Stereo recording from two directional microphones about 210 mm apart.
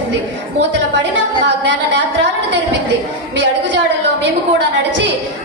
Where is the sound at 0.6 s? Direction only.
55° right (ahead or behind).